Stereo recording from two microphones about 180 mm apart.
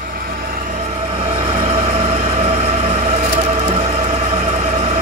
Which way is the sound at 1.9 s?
35° right (ahead or behind).